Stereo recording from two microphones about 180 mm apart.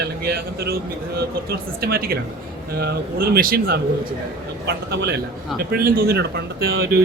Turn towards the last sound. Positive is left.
turn(degrees=-60)  # may be behind; listen again after turning